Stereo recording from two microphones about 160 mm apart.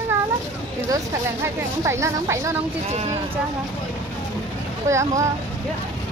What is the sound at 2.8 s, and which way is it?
Speech, 40° right (ahead or behind).